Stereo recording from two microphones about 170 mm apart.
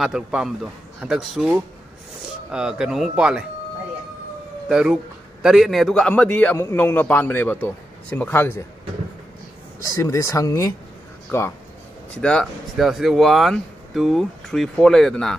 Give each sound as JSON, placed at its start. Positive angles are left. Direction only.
{"t": 0.0, "sound": "speech", "side_deg": -5}
{"t": 4.6, "sound": "a man's voice", "side_deg": -5}
{"t": 9.9, "sound": "a man's voice", "side_deg": 15}